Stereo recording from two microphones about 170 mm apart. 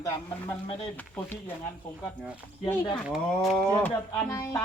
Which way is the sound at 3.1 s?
Centre (ahead or behind).